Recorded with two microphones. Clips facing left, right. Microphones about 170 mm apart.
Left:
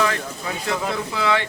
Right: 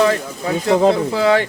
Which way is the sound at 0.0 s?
35° right (ahead or behind).